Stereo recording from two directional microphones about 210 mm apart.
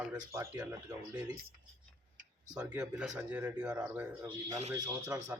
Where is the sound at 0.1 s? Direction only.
10° right (ahead or behind).